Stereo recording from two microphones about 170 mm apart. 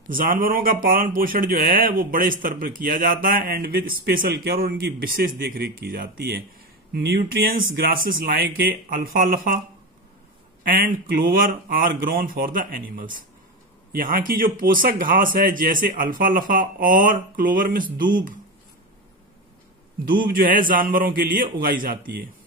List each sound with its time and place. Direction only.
0.1 s a man's voice: 55° right (ahead or behind)
10.6 s a man's voice: 55° right (ahead or behind)
20.1 s a man's voice: 55° right (ahead or behind)